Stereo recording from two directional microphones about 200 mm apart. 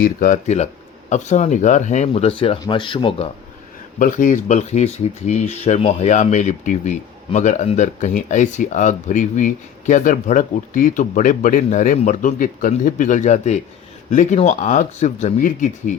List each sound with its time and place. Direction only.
0.0 s speech: 40° left (ahead or behind); by 3.2 s 25° left (ahead or behind)
3.9 s speech: 40° left (ahead or behind)